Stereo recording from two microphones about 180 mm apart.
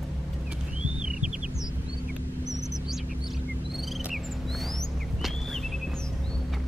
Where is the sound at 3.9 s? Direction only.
Centre (ahead or behind).